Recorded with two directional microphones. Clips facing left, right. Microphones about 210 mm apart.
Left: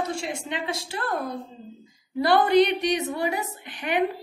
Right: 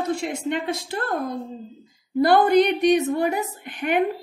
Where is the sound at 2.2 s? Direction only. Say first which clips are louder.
Right 2 dB; 50° right (ahead or behind).